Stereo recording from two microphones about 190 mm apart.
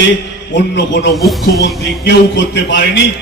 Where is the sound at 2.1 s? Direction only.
70° left (ahead or behind).